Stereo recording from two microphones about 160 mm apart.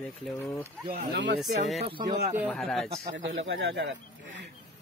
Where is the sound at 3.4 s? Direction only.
90° right.